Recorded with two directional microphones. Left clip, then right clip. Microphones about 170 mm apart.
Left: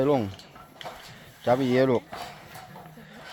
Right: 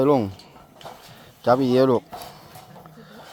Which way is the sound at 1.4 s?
40° right (ahead or behind).